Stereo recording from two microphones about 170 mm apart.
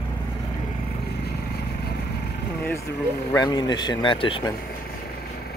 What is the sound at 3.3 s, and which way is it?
Speech, 20° left (ahead or behind).